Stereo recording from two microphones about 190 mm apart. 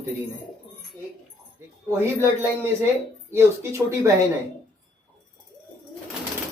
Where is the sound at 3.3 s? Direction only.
15° right (ahead or behind).